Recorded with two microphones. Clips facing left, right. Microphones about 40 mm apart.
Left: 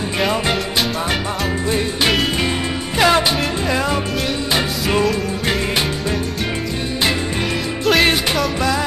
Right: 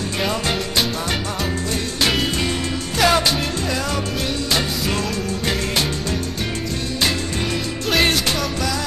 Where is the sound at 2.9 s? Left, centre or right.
Left.